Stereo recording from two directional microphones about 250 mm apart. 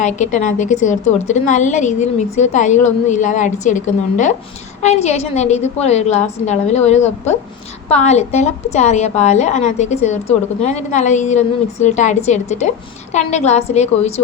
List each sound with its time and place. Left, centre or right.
0.0 s a woman's voice: left